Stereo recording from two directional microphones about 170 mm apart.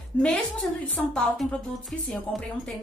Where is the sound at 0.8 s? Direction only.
5° left (ahead or behind).